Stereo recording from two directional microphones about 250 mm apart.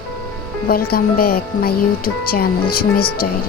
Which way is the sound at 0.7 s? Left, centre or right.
Left.